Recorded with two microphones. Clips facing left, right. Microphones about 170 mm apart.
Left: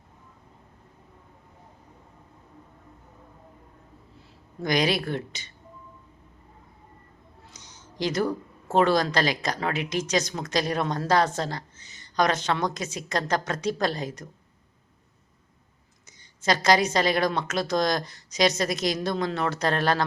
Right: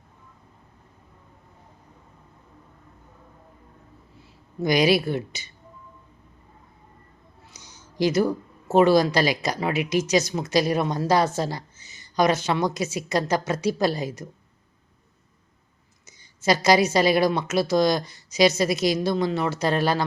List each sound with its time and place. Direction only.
4.6 s speech: 10° right (ahead or behind)
7.5 s speech: 10° right (ahead or behind)
16.0 s a woman's voice: 10° right (ahead or behind)